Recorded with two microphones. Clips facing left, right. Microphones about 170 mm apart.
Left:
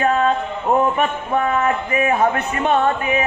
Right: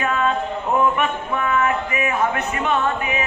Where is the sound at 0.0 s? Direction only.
40° left (ahead or behind).